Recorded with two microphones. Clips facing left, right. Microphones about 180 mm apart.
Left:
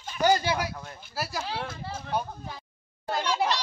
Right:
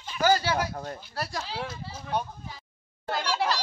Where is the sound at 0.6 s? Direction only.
45° right (ahead or behind).